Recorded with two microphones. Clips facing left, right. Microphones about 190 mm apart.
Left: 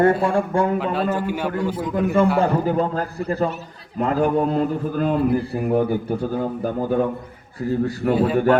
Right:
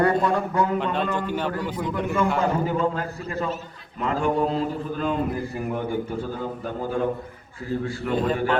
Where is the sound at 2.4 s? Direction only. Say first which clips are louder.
Left 3 dB; 35° left (ahead or behind).